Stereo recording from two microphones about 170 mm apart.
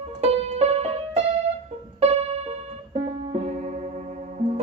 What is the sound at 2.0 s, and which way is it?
Music, 40° right (ahead or behind).